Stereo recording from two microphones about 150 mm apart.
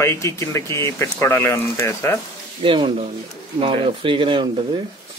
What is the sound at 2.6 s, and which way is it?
Speech, 35° right (ahead or behind).